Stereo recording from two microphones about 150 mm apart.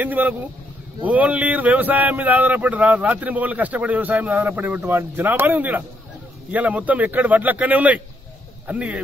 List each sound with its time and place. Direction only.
0.0 s speech: 10° right (ahead or behind)